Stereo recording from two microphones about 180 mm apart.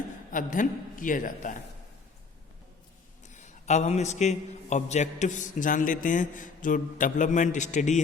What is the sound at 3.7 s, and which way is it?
A man's voice, 40° left (ahead or behind).